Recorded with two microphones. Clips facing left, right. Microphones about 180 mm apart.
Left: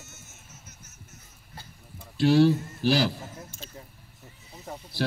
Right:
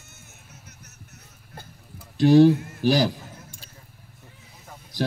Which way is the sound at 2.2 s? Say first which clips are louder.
Right 5 dB; 15° right (ahead or behind).